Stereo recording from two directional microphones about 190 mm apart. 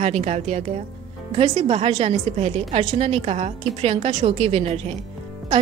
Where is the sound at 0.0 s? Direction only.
35° right (ahead or behind).